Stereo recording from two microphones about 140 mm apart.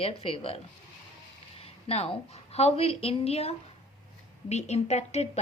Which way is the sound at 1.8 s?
45° left (ahead or behind).